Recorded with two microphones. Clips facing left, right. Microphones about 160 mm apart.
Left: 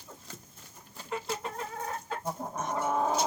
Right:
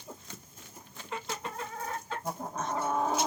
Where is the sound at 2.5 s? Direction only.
20° left (ahead or behind).